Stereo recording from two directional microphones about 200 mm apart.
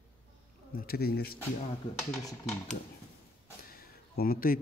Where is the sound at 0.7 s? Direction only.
50° left (ahead or behind).